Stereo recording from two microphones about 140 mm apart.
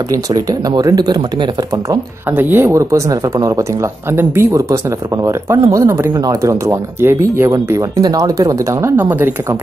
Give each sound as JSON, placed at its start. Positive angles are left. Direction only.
{"t": 0.1, "sound": "speech", "side_deg": -25}
{"t": 2.3, "sound": "speech", "side_deg": -15}